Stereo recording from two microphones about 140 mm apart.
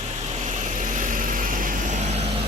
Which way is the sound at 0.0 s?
50° right (ahead or behind).